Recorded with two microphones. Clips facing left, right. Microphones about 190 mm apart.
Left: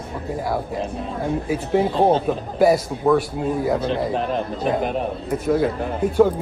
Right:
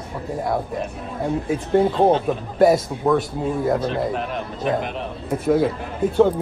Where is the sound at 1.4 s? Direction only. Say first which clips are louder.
Right 3 dB; 5° left (ahead or behind).